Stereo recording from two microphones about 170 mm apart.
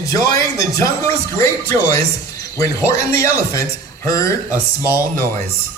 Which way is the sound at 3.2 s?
15° left (ahead or behind).